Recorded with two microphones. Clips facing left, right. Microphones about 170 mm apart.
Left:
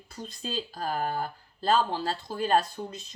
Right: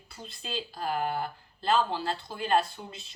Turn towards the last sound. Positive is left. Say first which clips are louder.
# left 1 dB
turn(degrees=40)  # may be behind; listen again after turning